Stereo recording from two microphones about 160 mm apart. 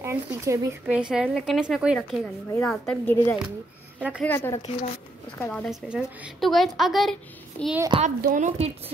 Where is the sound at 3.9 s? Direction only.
5° right (ahead or behind).